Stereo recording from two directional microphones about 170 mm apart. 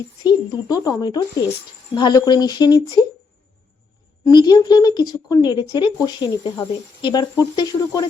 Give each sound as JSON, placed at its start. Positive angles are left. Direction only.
{"t": 0.3, "sound": "speech", "side_deg": 20}
{"t": 4.2, "sound": "speech", "side_deg": 25}